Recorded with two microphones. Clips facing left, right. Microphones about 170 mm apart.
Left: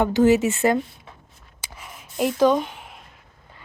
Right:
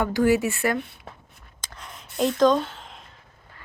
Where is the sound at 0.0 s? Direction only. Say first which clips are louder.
Left 4 dB; 20° left (ahead or behind).